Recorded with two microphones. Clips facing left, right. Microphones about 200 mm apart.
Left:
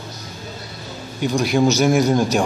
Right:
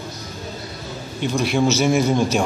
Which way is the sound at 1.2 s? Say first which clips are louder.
Left 2 dB; centre (ahead or behind).